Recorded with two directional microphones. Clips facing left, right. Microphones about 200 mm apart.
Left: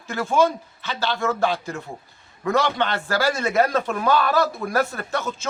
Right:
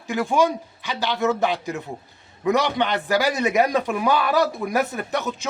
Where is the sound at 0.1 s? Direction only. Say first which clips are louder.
Even; 15° right (ahead or behind).